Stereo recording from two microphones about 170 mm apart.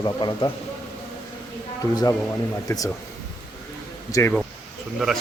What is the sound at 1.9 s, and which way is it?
Speech, 20° left (ahead or behind).